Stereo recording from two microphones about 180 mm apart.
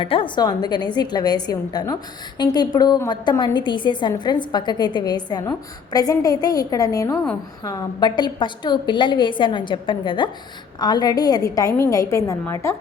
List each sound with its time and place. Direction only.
0.0 s a woman's voice: 30° left (ahead or behind)